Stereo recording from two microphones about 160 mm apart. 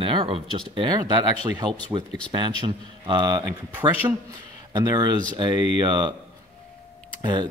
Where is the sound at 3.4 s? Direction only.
10° right (ahead or behind).